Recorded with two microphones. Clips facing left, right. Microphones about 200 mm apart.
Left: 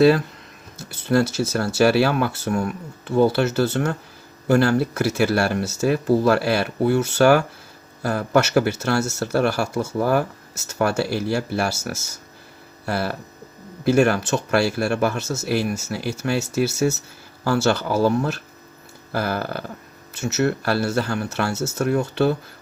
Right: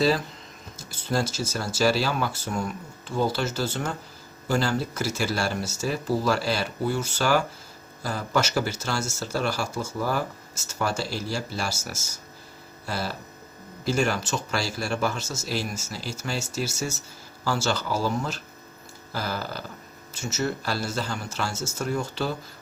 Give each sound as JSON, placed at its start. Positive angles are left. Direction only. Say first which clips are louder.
{"t": 1.0, "sound": "speech", "louder": "left 8 dB", "side_deg": 65}
{"t": 12.8, "sound": "hum", "louder": "left 6 dB", "side_deg": 60}
{"t": 13.8, "sound": "speech", "louder": "left 8 dB", "side_deg": 60}